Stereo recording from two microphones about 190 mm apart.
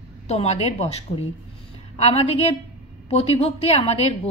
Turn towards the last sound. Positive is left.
turn(degrees=30)  # may be behind; listen again after turning